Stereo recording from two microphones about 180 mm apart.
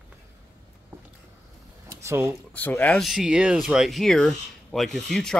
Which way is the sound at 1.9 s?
15° right (ahead or behind).